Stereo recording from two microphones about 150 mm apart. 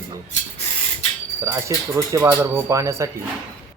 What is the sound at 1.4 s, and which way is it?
Speech, 20° right (ahead or behind).